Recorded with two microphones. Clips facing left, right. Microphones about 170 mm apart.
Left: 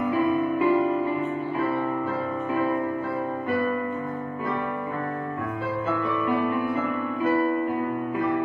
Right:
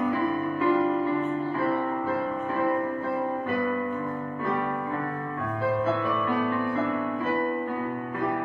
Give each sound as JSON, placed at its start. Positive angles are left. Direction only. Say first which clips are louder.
{"t": 0.1, "sound": "music", "louder": "left 4 dB", "side_deg": 15}
{"t": 6.2, "sound": "music", "louder": "left 4 dB", "side_deg": 15}